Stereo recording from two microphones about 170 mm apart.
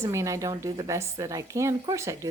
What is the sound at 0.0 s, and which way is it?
A woman's voice, 20° right (ahead or behind).